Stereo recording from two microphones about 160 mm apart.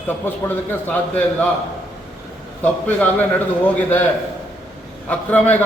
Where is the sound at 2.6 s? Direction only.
10° left (ahead or behind).